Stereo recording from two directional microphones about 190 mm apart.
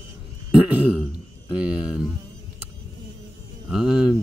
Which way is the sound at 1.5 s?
5° right (ahead or behind).